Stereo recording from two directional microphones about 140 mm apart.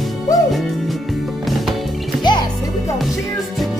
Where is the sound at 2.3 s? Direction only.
30° left (ahead or behind).